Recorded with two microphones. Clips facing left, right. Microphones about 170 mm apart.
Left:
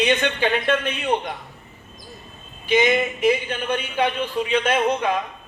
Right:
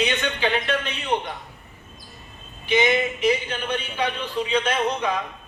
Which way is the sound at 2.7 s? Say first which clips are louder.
Left 2 dB; 45° left (ahead or behind).